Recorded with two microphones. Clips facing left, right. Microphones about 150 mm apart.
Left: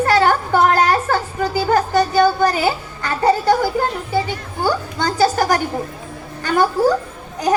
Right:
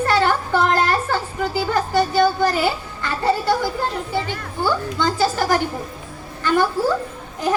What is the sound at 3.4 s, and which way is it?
A child's voice, 50° left (ahead or behind).